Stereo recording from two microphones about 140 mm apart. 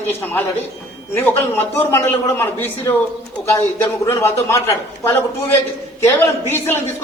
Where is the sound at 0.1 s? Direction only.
15° left (ahead or behind).